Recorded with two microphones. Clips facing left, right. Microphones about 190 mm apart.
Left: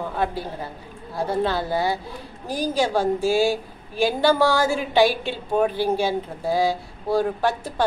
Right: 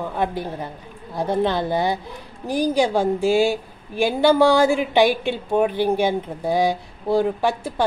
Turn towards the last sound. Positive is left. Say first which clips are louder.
# right 2 dB
turn(degrees=-15)  # may be behind; listen again after turning